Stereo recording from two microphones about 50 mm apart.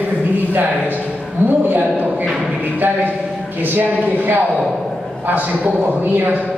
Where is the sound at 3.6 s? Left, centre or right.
Right.